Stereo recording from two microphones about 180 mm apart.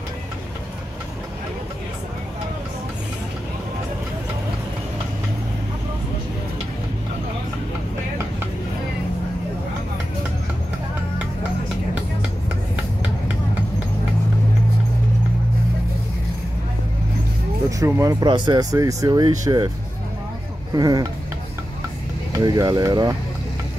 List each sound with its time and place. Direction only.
17.6 s speech: 15° right (ahead or behind)
20.7 s speech: 20° right (ahead or behind)
22.3 s speech: 20° right (ahead or behind)